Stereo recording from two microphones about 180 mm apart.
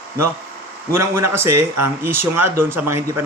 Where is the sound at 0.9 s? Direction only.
15° right (ahead or behind).